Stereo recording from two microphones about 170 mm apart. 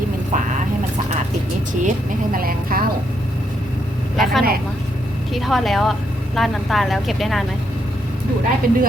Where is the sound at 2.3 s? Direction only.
60° right (ahead or behind).